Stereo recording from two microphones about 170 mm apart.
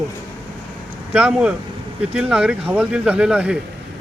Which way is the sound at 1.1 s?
5° right (ahead or behind).